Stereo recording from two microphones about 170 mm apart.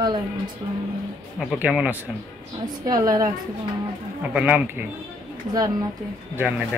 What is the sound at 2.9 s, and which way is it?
Speech, 20° right (ahead or behind).